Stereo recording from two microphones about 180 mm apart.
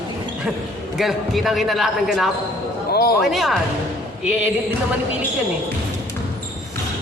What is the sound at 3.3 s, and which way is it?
Speech, centre (ahead or behind).